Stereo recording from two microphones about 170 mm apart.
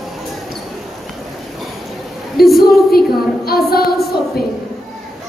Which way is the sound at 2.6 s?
65° left (ahead or behind).